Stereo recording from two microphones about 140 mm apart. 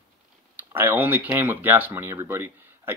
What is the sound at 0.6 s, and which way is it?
Speech, 15° right (ahead or behind).